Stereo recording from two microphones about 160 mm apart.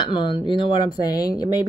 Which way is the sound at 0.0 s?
30° left (ahead or behind).